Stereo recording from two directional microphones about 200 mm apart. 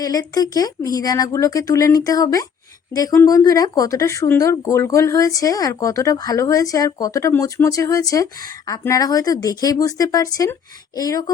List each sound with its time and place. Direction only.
0.0 s speech: 20° left (ahead or behind)